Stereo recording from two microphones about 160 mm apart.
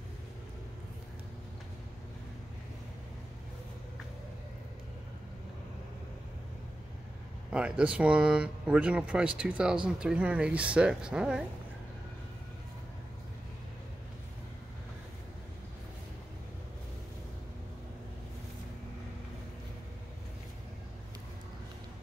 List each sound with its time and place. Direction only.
7.5 s a woman's voice: 5° right (ahead or behind)